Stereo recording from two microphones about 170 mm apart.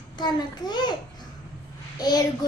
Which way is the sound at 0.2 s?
25° left (ahead or behind).